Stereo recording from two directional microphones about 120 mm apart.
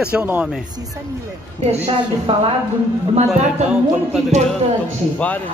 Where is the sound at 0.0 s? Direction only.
10° right (ahead or behind).